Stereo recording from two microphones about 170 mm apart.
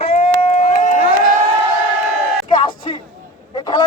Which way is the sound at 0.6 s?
50° left (ahead or behind).